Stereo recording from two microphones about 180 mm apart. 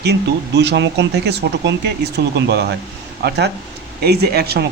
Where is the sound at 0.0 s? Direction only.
70° right (ahead or behind).